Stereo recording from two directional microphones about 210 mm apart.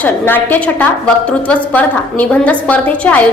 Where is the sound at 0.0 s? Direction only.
10° left (ahead or behind).